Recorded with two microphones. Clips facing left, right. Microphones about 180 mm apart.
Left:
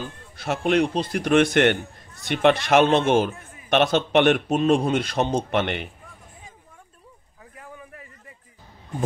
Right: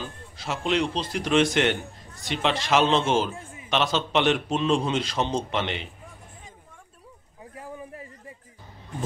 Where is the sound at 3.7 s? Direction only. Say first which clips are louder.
Left 5 dB; 55° left (ahead or behind).